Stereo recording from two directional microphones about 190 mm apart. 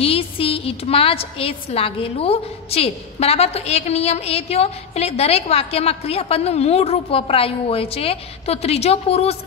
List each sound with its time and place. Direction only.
0.0 s a woman's voice: 30° left (ahead or behind)